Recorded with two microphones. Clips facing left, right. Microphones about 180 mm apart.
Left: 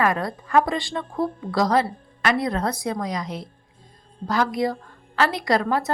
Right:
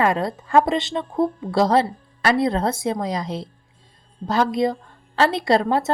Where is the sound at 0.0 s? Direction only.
25° right (ahead or behind).